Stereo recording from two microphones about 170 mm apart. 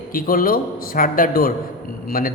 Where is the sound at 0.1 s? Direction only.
55° left (ahead or behind).